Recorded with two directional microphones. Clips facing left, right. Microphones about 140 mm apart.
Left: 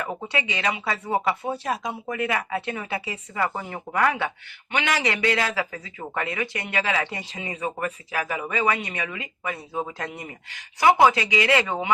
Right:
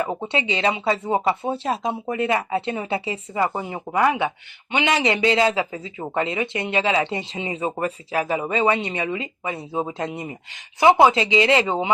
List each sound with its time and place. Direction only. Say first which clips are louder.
0.0 s speech: right 5 dB; 25° right (ahead or behind)